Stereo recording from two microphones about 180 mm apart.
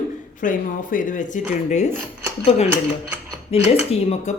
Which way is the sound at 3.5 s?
35° left (ahead or behind).